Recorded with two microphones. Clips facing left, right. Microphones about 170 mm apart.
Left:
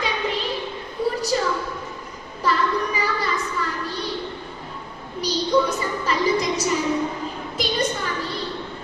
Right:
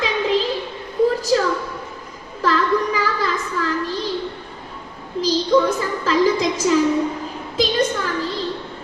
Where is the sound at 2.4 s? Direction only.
90° right.